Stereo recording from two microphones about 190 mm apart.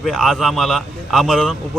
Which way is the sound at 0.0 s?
Centre (ahead or behind).